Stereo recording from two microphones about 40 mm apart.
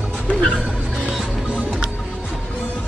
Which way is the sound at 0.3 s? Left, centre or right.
Left.